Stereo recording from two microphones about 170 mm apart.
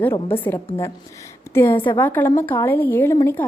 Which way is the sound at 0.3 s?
10° left (ahead or behind).